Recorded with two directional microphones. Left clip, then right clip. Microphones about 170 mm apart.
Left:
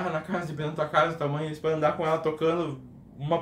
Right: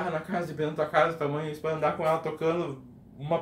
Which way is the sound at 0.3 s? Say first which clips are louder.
Right 1 dB; 15° left (ahead or behind).